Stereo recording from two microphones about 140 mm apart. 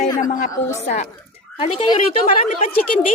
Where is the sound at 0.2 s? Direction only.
70° left (ahead or behind).